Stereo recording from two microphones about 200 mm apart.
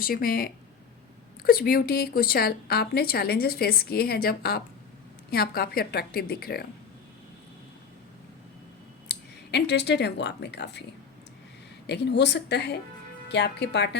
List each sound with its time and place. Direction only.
0.0 s a woman's voice: 45° left (ahead or behind)
9.0 s speech: 60° left (ahead or behind)
11.9 s a woman's voice: 60° left (ahead or behind)